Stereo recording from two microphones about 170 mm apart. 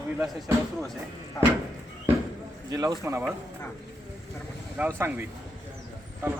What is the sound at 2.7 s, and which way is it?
Speech, 20° right (ahead or behind).